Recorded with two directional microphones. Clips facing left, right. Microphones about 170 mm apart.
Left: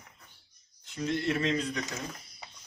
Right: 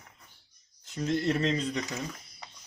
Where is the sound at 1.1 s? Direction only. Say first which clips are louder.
Right 2 dB; 40° right (ahead or behind).